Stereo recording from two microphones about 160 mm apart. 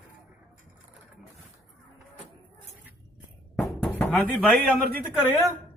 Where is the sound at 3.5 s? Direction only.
5° left (ahead or behind).